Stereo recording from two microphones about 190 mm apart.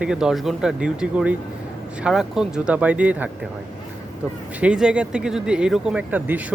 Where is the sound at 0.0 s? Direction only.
5° right (ahead or behind).